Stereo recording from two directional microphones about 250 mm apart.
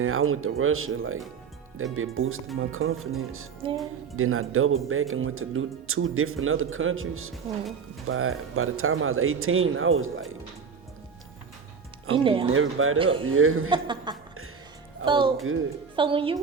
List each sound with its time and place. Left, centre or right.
0.0 s speech: right
3.6 s a woman's voice: centre
4.2 s speech: right
12.1 s a woman's voice: right
12.5 s speech: right
13.7 s a woman's voice: centre